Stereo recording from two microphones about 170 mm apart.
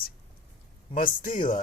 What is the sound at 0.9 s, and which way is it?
Speech, 50° left (ahead or behind).